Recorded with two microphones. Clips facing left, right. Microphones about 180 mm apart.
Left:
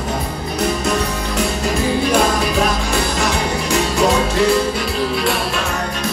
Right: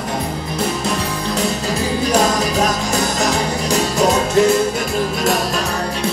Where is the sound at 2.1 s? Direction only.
40° right (ahead or behind).